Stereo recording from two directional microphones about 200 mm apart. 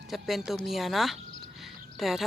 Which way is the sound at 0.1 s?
Centre (ahead or behind).